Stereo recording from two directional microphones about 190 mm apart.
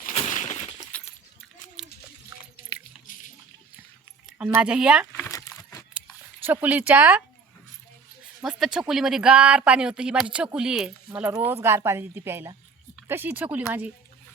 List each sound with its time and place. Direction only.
0.0 s breaking: 35° left (ahead or behind)
0.9 s a sound: 5° left (ahead or behind)
3.1 s water: 45° left (ahead or behind)
4.4 s speech: 5° right (ahead or behind)
5.1 s a sound: 10° left (ahead or behind)
6.4 s speech: 10° right (ahead or behind)
8.4 s speech: centre (ahead or behind)